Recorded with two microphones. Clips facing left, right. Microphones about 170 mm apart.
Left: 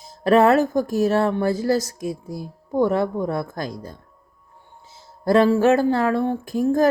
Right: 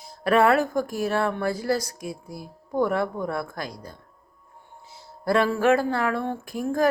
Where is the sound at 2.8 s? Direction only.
25° left (ahead or behind).